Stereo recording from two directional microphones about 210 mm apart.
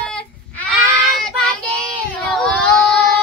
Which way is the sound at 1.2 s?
Centre (ahead or behind).